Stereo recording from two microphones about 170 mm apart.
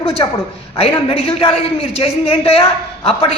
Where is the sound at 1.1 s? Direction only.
35° left (ahead or behind).